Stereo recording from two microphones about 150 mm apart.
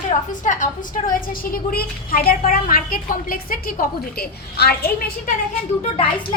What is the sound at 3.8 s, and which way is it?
A woman's voice, 90° left.